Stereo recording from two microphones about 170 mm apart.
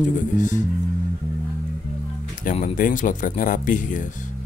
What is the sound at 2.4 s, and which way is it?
Speech, 50° left (ahead or behind).